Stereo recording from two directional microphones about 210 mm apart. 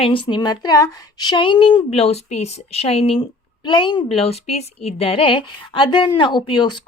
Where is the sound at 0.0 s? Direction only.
25° left (ahead or behind).